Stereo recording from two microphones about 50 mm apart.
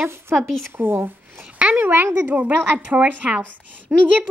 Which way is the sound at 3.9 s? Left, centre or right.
Right.